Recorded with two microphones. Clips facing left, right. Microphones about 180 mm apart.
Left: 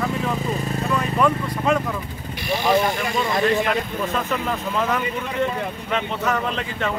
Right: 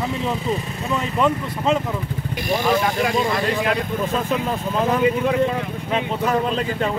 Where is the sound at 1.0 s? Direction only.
25° right (ahead or behind).